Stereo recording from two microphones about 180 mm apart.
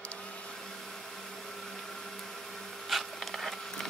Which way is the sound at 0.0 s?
5° left (ahead or behind).